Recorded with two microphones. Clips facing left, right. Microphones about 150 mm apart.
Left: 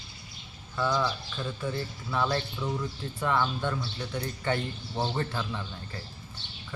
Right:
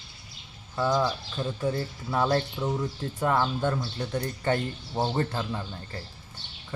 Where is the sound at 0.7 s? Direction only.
15° right (ahead or behind).